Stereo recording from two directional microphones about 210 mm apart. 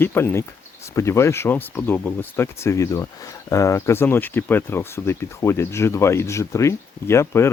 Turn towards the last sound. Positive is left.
turn(degrees=10)  # may be behind; listen again after turning